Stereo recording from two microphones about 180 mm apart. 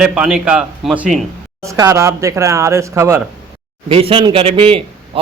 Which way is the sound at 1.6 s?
20° right (ahead or behind).